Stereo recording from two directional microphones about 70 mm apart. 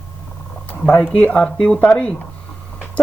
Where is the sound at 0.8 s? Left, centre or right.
Centre.